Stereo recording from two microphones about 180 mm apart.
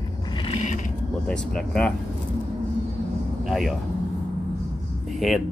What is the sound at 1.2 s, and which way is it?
Speech, 5° left (ahead or behind).